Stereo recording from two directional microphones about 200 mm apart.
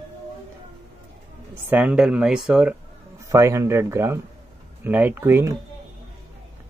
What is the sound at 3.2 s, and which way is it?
Speech, 15° right (ahead or behind).